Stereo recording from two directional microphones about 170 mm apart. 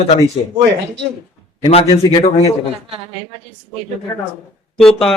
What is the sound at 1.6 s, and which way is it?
Speech, 35° left (ahead or behind).